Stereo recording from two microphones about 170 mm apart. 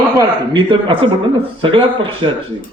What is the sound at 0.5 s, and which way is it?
A man's voice, 30° right (ahead or behind).